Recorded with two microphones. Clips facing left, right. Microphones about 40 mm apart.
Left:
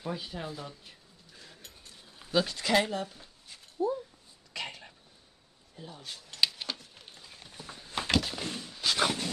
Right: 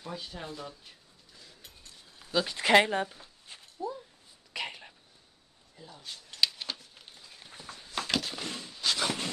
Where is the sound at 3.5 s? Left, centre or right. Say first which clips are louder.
Right 2 dB; right.